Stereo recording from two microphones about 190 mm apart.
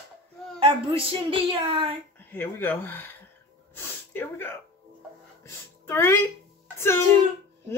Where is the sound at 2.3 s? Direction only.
10° left (ahead or behind).